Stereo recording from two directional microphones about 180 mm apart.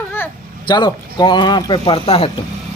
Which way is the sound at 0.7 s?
25° left (ahead or behind).